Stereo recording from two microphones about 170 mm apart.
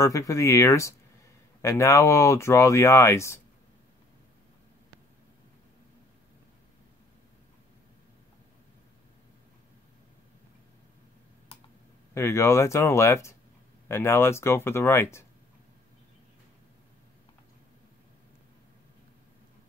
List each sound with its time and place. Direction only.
0.0 s speech: 20° left (ahead or behind)
12.1 s speech: 15° left (ahead or behind)